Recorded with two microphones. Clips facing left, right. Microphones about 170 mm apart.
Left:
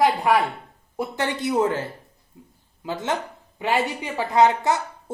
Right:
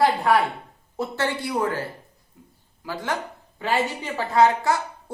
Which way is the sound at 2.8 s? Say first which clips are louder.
Left 2 dB; 20° left (ahead or behind).